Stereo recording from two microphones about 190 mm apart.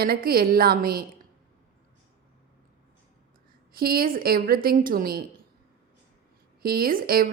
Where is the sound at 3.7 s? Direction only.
50° right (ahead or behind).